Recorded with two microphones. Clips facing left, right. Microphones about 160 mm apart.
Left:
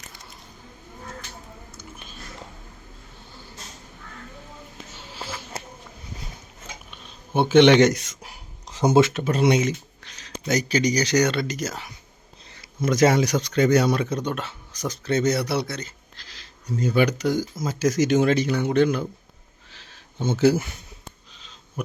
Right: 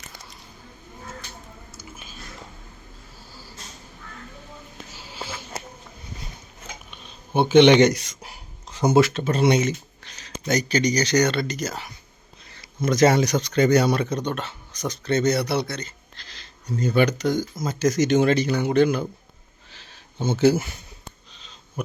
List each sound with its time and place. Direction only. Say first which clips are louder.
4.9 s sniff: even; centre (ahead or behind)
6.9 s speech: right 1 dB; centre (ahead or behind)
8.8 s speech: even; 20° left (ahead or behind)
9.2 s a sound: even; 5° left (ahead or behind)
10.4 s speech: even; 5° left (ahead or behind)
20.4 s speech: even; centre (ahead or behind)